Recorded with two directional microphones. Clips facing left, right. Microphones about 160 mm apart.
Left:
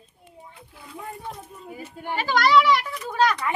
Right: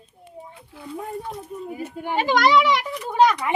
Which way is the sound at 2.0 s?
15° right (ahead or behind).